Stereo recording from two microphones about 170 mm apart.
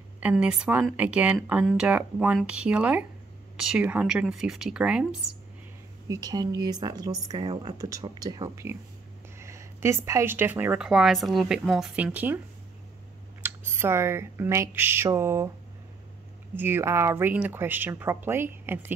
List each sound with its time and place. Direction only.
0.2 s speech: 10° right (ahead or behind)
6.0 s speech: 20° right (ahead or behind)
13.4 s speech: 15° right (ahead or behind)
16.5 s speech: 10° right (ahead or behind)